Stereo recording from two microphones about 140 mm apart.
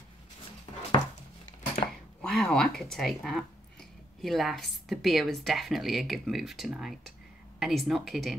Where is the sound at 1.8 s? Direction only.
55° left (ahead or behind).